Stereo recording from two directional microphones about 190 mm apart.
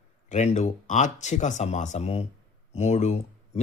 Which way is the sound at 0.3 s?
40° left (ahead or behind).